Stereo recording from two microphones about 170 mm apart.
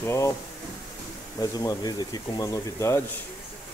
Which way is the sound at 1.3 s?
20° left (ahead or behind).